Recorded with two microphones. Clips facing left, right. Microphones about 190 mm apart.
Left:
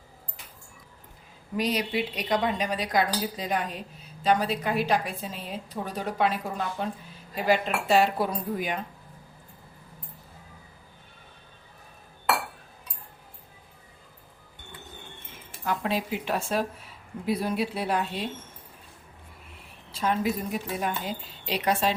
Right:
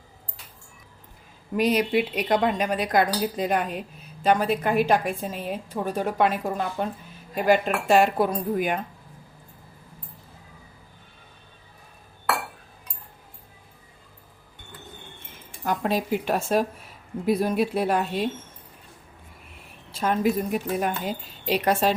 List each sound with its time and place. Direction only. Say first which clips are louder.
1.5 s a woman's voice: right 6 dB; 55° right (ahead or behind)
15.6 s a woman's voice: right 3 dB; 45° right (ahead or behind)
19.9 s a woman's voice: right 4 dB; 50° right (ahead or behind)